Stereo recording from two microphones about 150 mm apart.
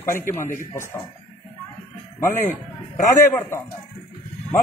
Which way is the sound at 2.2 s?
55° left (ahead or behind).